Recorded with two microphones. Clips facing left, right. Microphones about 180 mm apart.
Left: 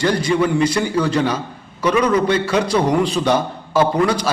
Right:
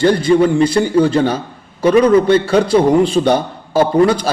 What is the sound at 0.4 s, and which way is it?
A man's voice, 30° right (ahead or behind).